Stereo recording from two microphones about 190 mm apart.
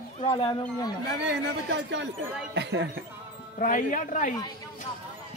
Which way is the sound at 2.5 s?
65° right (ahead or behind).